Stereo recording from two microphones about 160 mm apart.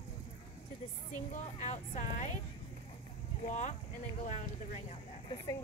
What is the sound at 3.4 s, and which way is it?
Speech, 50° left (ahead or behind).